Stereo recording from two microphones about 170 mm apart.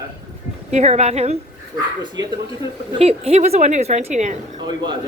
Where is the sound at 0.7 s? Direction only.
40° right (ahead or behind).